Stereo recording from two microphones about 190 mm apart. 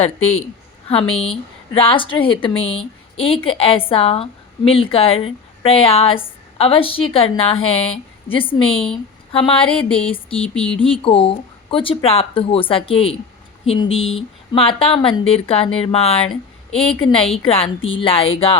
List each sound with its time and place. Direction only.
0.0 s a woman's voice: 30° left (ahead or behind)
10.0 s a woman's voice: 30° left (ahead or behind)
10.3 s a sound: 5° left (ahead or behind)
10.8 s a woman's voice: 30° left (ahead or behind)
13.8 s speech: 90° left
14.2 s a woman's voice: 30° left (ahead or behind)